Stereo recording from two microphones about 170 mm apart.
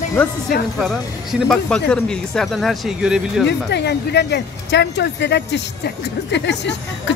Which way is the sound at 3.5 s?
85° left.